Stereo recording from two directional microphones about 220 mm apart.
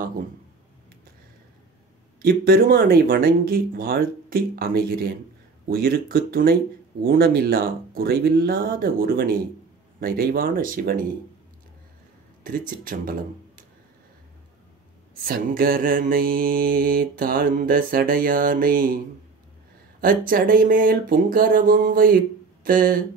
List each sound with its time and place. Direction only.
2.2 s mantra: 45° right (ahead or behind)
5.7 s speech: 45° right (ahead or behind)
9.9 s mantra: 40° right (ahead or behind)
12.4 s mantra: 40° right (ahead or behind)
15.2 s mantra: 40° right (ahead or behind)
20.0 s mantra: 40° right (ahead or behind)